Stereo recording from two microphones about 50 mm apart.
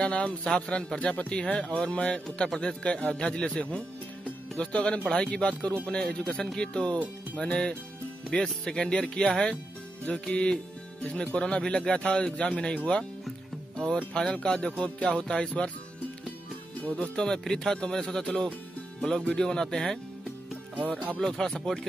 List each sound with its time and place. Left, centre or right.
0.0 s speech: left
4.2 s music: left
5.1 s speech: centre
14.1 s a man's voice: centre
17.0 s a man's voice: centre
21.3 s a man's voice: centre